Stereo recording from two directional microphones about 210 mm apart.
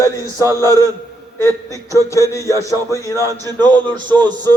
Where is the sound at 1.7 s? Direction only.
15° right (ahead or behind).